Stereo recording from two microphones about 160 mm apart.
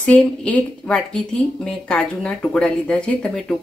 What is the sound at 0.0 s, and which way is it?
A woman's voice, 5° left (ahead or behind).